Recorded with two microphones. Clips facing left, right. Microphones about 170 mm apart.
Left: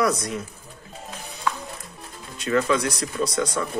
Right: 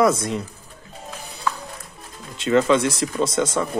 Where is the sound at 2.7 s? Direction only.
25° right (ahead or behind).